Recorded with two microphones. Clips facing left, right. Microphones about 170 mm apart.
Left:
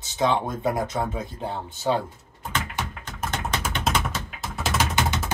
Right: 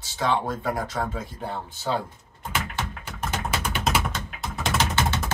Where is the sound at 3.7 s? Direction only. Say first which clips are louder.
Even; 5° right (ahead or behind).